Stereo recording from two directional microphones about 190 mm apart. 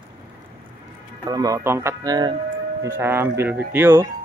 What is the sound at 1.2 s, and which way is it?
Speech, 20° right (ahead or behind).